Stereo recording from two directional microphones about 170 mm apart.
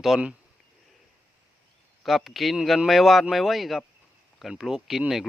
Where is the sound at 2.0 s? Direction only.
Centre (ahead or behind).